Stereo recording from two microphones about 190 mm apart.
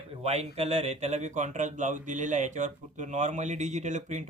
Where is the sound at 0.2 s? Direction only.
35° right (ahead or behind).